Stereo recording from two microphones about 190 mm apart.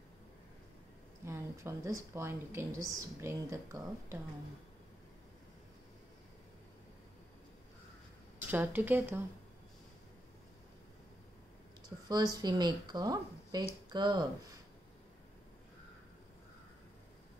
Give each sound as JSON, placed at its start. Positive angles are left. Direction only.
{"t": 1.2, "sound": "speech", "side_deg": -15}
{"t": 8.5, "sound": "speech", "side_deg": -10}
{"t": 12.1, "sound": "speech", "side_deg": -20}